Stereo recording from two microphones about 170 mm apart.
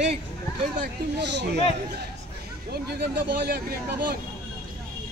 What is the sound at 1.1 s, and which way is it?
Speech, 90° right.